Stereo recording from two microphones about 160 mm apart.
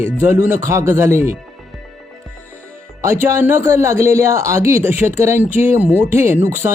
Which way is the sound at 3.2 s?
15° right (ahead or behind).